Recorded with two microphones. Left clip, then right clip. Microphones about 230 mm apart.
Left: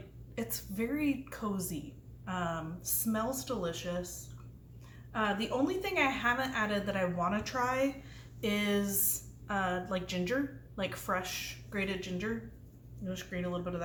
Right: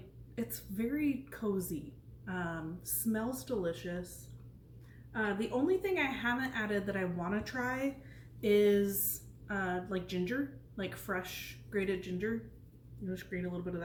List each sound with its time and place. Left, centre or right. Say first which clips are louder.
0.3 s a woman's voice: left 3 dB; centre
5.1 s a woman's voice: left 2 dB; centre